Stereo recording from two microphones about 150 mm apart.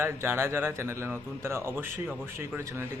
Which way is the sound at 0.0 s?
15° right (ahead or behind).